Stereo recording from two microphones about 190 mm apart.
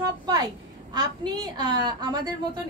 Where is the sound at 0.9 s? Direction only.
20° right (ahead or behind).